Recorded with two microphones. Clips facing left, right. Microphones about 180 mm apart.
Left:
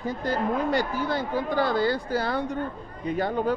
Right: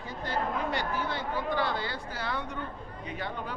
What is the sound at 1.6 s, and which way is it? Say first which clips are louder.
Speech: left 8 dB; 40° left (ahead or behind).